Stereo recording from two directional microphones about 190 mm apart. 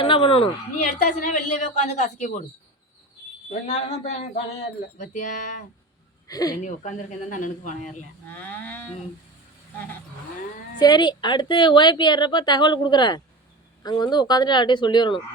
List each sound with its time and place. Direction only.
0.0 s a woman's voice: 30° left (ahead or behind)
3.5 s a woman's voice: 35° left (ahead or behind)
6.2 s speech: 20° left (ahead or behind)
6.6 s a woman's voice: 40° left (ahead or behind)
8.3 s livestock: 10° left (ahead or behind)
10.8 s a woman's voice: 20° left (ahead or behind)